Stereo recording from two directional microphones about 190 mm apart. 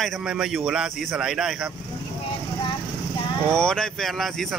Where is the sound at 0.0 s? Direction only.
Centre (ahead or behind).